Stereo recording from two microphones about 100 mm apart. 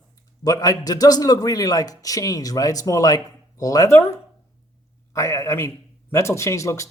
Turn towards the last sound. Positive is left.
turn(degrees=30)  # may be behind; listen again after turning